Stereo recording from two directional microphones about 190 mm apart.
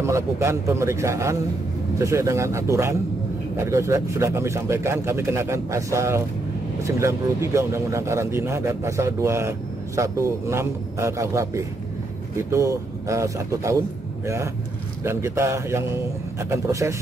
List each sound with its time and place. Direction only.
0.0 s a man's voice: 15° right (ahead or behind)